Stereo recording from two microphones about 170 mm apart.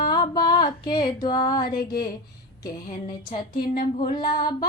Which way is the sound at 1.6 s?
60° left (ahead or behind).